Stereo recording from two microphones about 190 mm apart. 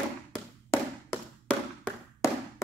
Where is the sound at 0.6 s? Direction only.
10° left (ahead or behind).